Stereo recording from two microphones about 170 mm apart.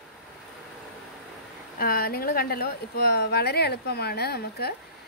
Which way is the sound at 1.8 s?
60° left (ahead or behind).